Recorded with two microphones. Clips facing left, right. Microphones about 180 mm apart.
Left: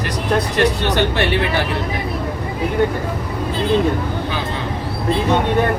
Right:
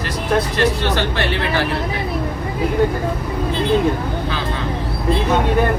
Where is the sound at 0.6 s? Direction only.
15° left (ahead or behind).